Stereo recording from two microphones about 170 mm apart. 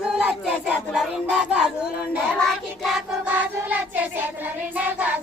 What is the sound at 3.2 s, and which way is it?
Child singing, 10° right (ahead or behind).